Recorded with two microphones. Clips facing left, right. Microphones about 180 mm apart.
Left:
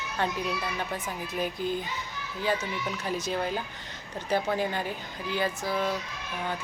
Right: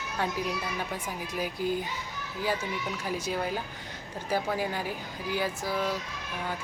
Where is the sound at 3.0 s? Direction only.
10° right (ahead or behind).